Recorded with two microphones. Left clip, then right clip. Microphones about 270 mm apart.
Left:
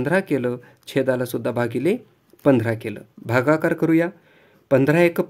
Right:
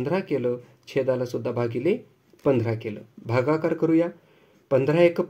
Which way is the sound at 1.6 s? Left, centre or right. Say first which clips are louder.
Left 2 dB; left.